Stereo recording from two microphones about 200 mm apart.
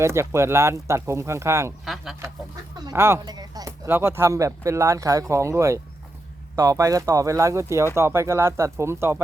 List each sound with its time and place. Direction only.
0.0 s speech: 15° right (ahead or behind)
1.8 s a sound: centre (ahead or behind)
2.7 s speech: 15° right (ahead or behind)